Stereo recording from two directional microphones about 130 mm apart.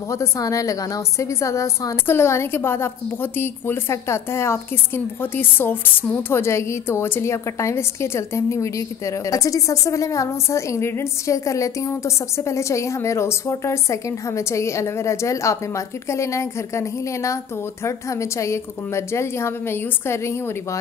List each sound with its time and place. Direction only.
0.1 s a woman's voice: 25° left (ahead or behind)